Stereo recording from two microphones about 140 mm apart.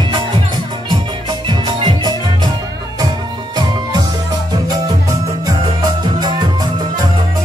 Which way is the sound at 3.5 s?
30° right (ahead or behind).